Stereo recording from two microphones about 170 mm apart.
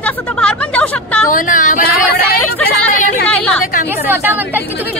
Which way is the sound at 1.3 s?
50° left (ahead or behind).